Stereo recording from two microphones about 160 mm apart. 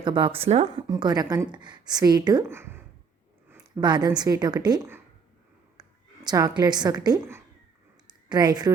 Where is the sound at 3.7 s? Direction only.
25° right (ahead or behind).